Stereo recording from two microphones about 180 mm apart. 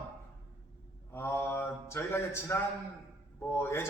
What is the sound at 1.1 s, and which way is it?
Mantra, 15° left (ahead or behind).